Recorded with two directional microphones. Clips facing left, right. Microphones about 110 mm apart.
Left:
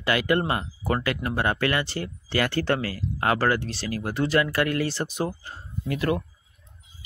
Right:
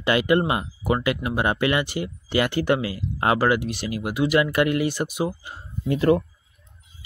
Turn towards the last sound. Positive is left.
turn(degrees=-25)  # may be behind; listen again after turning